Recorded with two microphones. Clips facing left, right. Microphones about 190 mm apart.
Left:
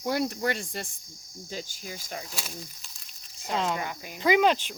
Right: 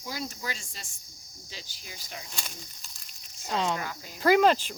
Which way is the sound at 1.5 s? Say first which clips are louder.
Left 9 dB; 45° left (ahead or behind).